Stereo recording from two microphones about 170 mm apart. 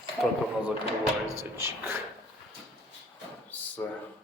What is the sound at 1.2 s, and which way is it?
Speech, 15° right (ahead or behind).